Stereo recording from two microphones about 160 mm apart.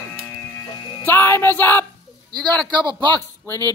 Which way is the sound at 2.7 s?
30° right (ahead or behind).